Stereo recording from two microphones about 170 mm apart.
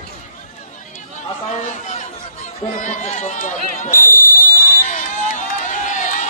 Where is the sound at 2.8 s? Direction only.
45° left (ahead or behind).